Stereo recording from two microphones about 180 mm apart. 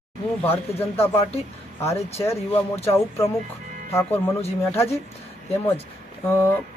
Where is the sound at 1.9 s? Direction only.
35° left (ahead or behind).